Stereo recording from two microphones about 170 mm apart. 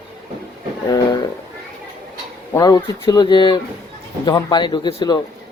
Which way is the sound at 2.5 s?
20° left (ahead or behind).